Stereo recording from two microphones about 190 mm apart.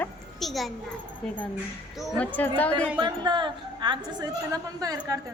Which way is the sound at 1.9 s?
5° left (ahead or behind).